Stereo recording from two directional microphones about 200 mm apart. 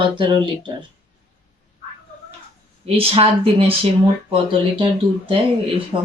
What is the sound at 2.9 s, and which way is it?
Speech, 25° right (ahead or behind).